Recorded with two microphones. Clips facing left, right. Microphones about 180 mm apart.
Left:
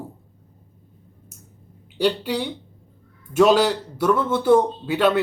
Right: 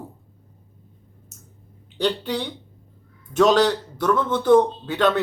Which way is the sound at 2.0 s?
10° left (ahead or behind).